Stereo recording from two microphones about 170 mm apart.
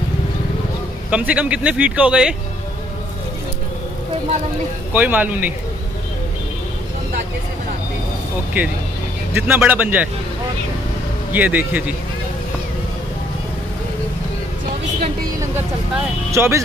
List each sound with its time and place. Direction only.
1.1 s a man's voice: 10° right (ahead or behind)
4.9 s a man's voice: 10° right (ahead or behind)
8.6 s a man's voice: 10° right (ahead or behind)
11.3 s a man's voice: 10° right (ahead or behind)
16.3 s speech: 15° right (ahead or behind)